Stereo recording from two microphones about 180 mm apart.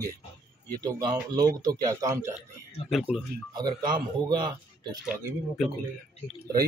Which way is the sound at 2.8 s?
Centre (ahead or behind).